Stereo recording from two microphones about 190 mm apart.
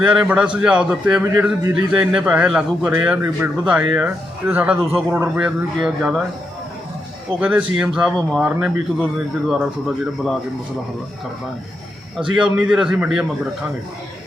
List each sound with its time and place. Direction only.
0.0 s a man's voice: 5° right (ahead or behind)
7.3 s a man's voice: 5° right (ahead or behind)
12.1 s a man's voice: 5° right (ahead or behind)